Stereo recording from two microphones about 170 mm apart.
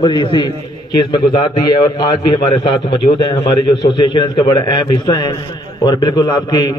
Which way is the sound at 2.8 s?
25° left (ahead or behind).